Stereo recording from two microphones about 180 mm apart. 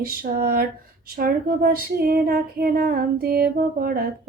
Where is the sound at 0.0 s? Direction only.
55° right (ahead or behind).